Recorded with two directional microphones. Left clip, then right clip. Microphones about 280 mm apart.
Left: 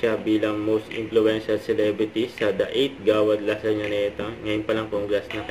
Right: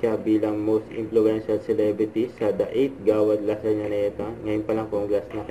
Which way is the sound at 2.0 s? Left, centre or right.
Centre.